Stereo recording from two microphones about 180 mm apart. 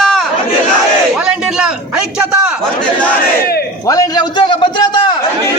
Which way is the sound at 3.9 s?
20° left (ahead or behind).